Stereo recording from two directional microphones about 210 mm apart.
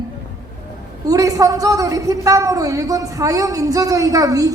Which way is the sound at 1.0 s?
15° right (ahead or behind).